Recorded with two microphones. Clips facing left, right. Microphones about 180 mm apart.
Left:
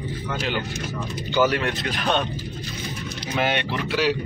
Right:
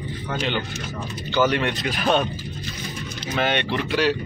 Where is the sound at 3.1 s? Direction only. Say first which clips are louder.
Right 1 dB; 10° left (ahead or behind).